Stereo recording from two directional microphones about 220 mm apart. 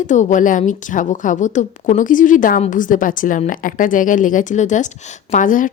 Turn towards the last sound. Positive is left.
turn(degrees=35)  # may be behind; listen again after turning